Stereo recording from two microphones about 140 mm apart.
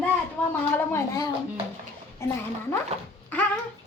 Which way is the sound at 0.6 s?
20° left (ahead or behind).